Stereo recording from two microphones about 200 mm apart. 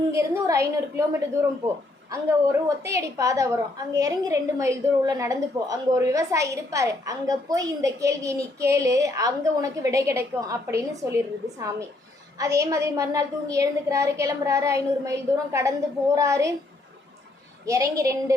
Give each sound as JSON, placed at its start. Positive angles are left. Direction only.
{"t": 0.1, "sound": "a woman's voice", "side_deg": -15}
{"t": 17.7, "sound": "a woman's voice", "side_deg": -15}